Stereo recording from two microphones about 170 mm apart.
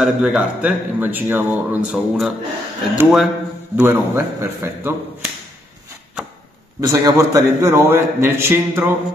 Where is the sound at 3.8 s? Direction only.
15° right (ahead or behind).